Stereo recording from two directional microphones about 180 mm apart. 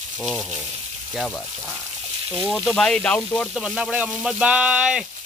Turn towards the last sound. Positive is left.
turn(degrees=-5)  # may be behind; listen again after turning